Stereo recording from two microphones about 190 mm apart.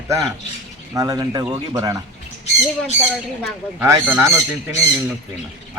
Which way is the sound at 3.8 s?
10° right (ahead or behind).